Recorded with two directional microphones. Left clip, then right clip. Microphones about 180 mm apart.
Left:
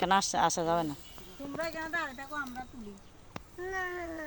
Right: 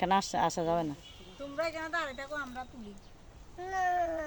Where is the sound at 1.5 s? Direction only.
25° right (ahead or behind).